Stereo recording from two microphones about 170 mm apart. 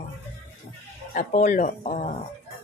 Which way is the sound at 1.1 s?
45° left (ahead or behind).